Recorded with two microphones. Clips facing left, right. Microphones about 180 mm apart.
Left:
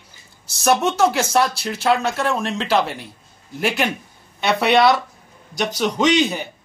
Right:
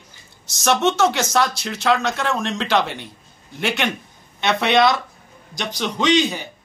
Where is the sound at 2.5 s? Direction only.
5° left (ahead or behind).